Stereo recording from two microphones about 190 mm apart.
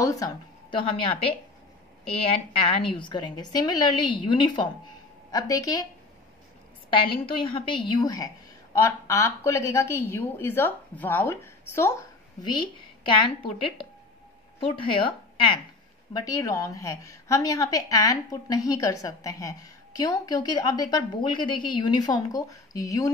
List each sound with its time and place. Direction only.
0.0 s a woman's voice: 15° left (ahead or behind)
6.9 s a woman's voice: 30° left (ahead or behind)
12.4 s a woman's voice: 25° left (ahead or behind)